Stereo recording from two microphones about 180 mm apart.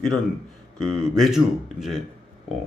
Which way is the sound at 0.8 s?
5° left (ahead or behind).